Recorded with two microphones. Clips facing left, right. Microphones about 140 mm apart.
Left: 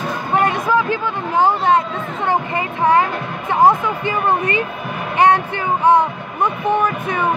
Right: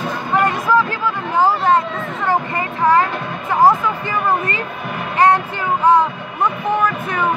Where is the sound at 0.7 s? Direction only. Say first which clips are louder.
Right 1 dB; 20° left (ahead or behind).